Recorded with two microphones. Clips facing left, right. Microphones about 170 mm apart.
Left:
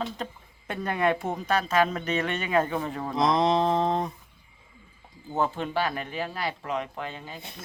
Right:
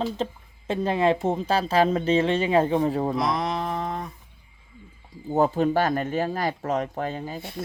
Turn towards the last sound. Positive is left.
turn(degrees=-40)  # may be behind; listen again after turning